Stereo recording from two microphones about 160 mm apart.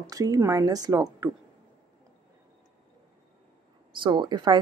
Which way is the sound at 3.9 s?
30° right (ahead or behind).